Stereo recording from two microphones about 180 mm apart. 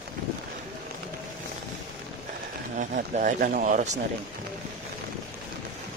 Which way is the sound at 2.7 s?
45° right (ahead or behind).